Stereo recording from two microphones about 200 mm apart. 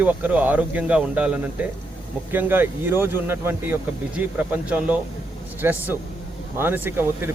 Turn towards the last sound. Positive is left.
turn(degrees=-10)  # may be behind; listen again after turning